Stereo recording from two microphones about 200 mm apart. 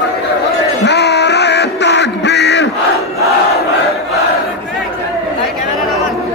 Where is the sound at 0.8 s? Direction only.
60° left (ahead or behind).